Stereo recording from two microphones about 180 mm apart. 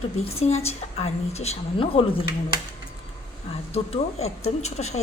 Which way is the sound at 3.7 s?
35° left (ahead or behind).